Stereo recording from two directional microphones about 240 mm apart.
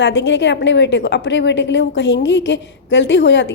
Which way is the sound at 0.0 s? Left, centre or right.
Left.